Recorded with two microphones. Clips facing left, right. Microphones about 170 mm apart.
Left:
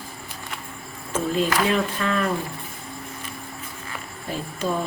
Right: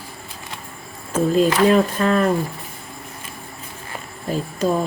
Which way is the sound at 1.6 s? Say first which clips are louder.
Right 7 dB; 40° right (ahead or behind).